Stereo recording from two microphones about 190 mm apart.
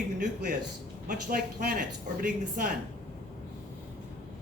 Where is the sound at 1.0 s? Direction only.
50° right (ahead or behind).